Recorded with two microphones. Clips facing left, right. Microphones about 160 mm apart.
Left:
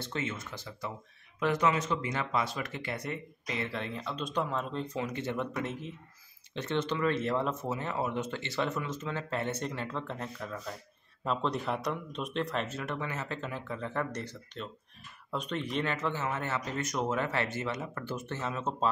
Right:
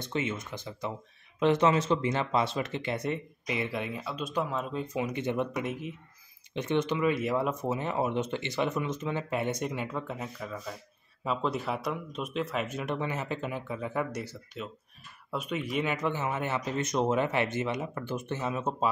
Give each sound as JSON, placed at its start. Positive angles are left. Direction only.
{"t": 0.0, "sound": "speech", "side_deg": -20}
{"t": 12.6, "sound": "speech", "side_deg": -15}